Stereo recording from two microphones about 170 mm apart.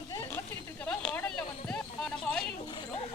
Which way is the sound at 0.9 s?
5° left (ahead or behind).